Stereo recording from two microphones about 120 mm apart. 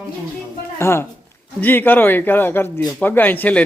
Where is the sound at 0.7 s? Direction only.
20° left (ahead or behind).